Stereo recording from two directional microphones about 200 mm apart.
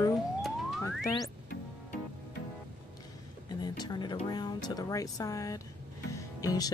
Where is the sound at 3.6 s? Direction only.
20° left (ahead or behind).